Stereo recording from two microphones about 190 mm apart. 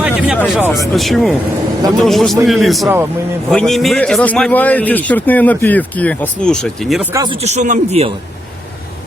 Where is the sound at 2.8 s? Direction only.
15° right (ahead or behind).